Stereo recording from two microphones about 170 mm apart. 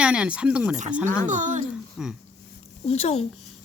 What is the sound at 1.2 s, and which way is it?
Speech, 45° right (ahead or behind).